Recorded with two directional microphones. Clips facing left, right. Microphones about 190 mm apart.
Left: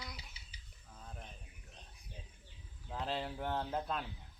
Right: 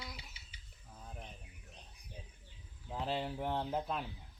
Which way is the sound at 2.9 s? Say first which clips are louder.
Right 2 dB; 10° right (ahead or behind).